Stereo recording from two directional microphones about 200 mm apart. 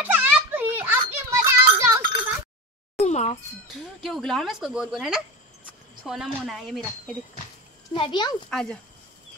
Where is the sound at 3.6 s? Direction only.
Centre (ahead or behind).